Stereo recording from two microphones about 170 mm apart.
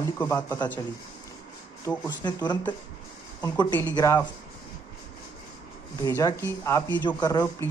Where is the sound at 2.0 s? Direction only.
25° left (ahead or behind).